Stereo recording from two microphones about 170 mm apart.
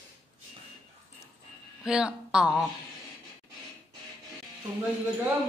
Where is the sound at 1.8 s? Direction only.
5° right (ahead or behind).